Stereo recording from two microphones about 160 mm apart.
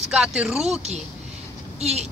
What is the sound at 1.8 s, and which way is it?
Speech, 45° right (ahead or behind).